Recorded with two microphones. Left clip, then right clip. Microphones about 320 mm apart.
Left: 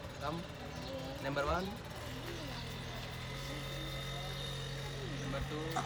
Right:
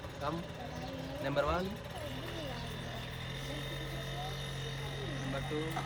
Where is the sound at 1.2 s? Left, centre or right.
Centre.